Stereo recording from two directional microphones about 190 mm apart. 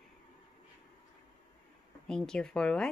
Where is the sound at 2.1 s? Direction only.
5° left (ahead or behind).